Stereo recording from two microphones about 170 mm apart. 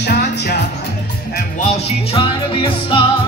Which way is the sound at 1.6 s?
40° left (ahead or behind).